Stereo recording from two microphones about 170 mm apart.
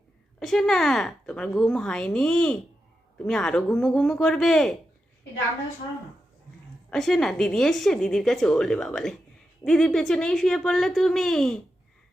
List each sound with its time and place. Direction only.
0.3 s a woman's voice: 5° left (ahead or behind)
6.9 s a woman's voice: 5° left (ahead or behind)